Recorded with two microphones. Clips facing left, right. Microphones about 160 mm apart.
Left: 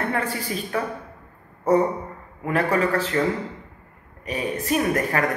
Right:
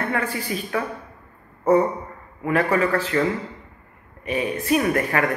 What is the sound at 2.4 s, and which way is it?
Speech, 40° left (ahead or behind).